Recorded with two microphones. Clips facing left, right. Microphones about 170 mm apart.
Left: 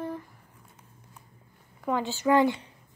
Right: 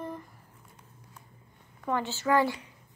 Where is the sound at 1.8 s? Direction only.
15° left (ahead or behind).